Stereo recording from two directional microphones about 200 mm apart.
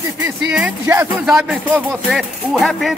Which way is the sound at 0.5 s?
5° right (ahead or behind).